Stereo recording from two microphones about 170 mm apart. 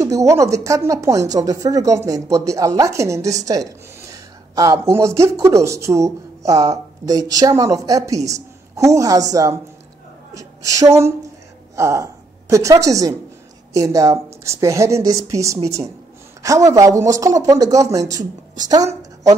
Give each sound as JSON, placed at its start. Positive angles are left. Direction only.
{"t": 0.0, "sound": "a woman's voice", "side_deg": -20}